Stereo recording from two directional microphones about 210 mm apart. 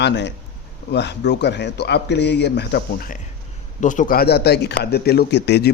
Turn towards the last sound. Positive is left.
turn(degrees=55)  # may be behind; listen again after turning